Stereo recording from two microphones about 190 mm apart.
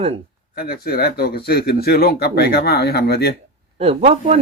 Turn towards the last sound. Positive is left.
turn(degrees=-30)  # may be behind; listen again after turning